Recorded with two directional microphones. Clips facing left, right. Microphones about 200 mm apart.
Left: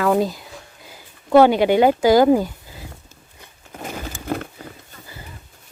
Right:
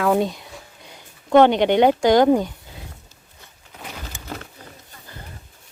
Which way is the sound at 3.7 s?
50° left (ahead or behind).